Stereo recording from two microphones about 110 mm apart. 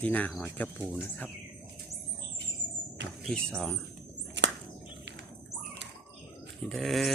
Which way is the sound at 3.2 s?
5° left (ahead or behind).